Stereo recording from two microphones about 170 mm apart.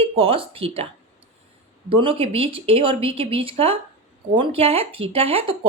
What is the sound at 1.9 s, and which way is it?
Speech, 30° right (ahead or behind).